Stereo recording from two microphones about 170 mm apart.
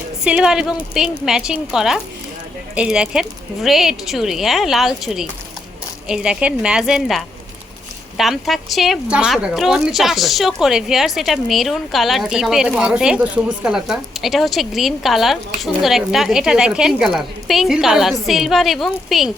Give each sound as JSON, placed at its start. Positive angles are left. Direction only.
{"t": 0.3, "sound": "speech", "side_deg": -5}